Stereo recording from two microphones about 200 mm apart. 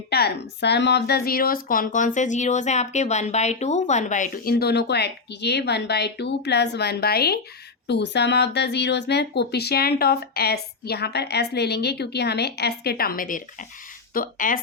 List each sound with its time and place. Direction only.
0.1 s a woman's voice: 55° left (ahead or behind)